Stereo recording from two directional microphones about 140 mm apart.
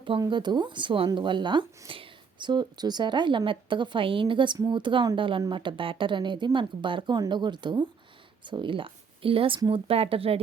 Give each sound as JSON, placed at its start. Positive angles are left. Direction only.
{"t": 0.2, "sound": "speech", "side_deg": -35}